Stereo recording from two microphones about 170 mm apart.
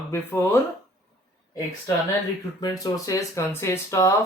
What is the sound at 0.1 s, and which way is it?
Speech, 15° left (ahead or behind).